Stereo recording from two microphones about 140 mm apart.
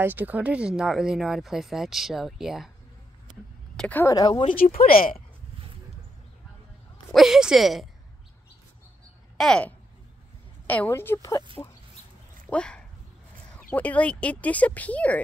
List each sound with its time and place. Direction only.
0.0 s speech: 15° right (ahead or behind)
3.7 s a sound: 10° left (ahead or behind)
4.0 s speech: 25° left (ahead or behind)
4.7 s speech: 90° left
7.1 s speech: centre (ahead or behind)
9.4 s speech: 5° left (ahead or behind)
12.4 s speech: 5° left (ahead or behind)